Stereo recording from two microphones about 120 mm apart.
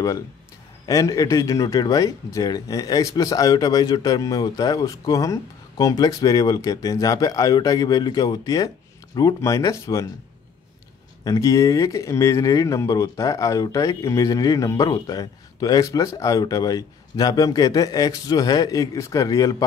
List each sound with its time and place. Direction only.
0.8 s a man's voice: 30° left (ahead or behind)
11.2 s speech: 25° left (ahead or behind)